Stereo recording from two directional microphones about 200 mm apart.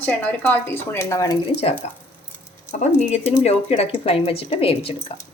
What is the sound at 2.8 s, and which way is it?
Speech, 35° left (ahead or behind).